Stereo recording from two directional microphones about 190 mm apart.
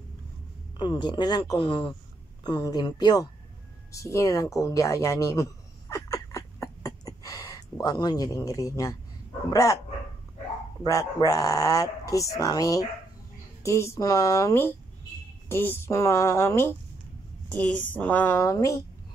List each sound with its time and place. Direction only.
0.7 s speech: 25° left (ahead or behind)
3.9 s a sound: 15° left (ahead or behind)
9.5 s speech: 15° left (ahead or behind)
10.8 s speech: 20° left (ahead or behind)
17.9 s speech: 10° left (ahead or behind)